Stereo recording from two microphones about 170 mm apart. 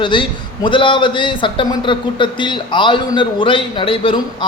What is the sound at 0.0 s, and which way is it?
Speech, 30° left (ahead or behind).